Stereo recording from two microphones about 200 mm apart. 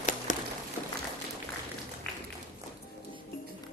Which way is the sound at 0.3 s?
40° left (ahead or behind).